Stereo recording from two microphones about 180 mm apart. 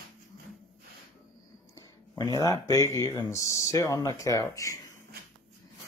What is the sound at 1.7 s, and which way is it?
Speech, 20° left (ahead or behind).